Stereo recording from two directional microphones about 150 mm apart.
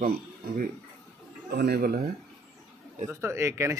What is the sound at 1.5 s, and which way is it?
Speech, 90° right.